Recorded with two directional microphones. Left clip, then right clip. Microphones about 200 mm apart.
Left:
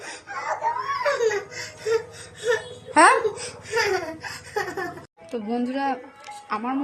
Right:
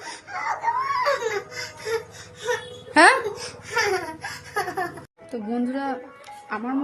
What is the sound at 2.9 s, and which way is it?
Music, 30° right (ahead or behind).